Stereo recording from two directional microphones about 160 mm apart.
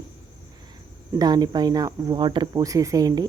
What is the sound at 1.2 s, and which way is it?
Speech, 25° right (ahead or behind).